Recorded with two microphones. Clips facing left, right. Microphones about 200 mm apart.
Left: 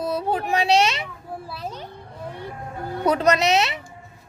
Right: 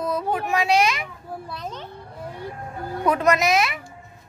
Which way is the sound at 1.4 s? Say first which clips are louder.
Left 1 dB; 5° left (ahead or behind).